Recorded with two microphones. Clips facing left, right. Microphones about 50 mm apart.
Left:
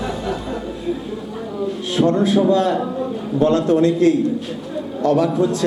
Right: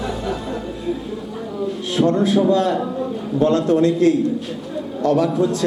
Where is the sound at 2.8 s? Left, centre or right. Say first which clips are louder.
Left 1 dB; left.